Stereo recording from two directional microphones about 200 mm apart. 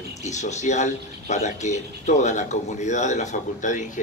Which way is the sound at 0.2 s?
35° left (ahead or behind).